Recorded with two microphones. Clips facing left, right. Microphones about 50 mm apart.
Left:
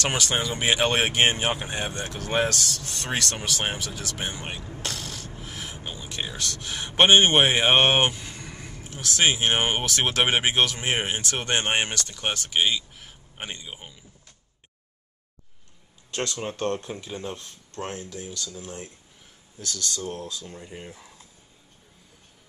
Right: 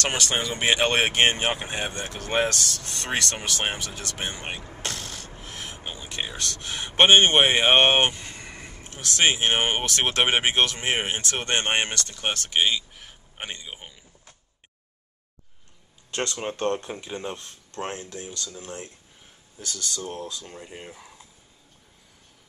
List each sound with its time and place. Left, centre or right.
0.0 s speech: centre
4.6 s speech: centre
4.8 s a sound: centre
5.8 s a sound: centre
6.3 s speech: centre
8.4 s a sound: centre
8.8 s a man's voice: centre
16.1 s speech: centre
17.4 s speech: right
18.2 s speech: centre
19.6 s speech: centre